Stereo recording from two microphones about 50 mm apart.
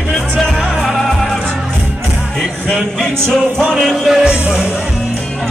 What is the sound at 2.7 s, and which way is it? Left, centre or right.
Music, centre.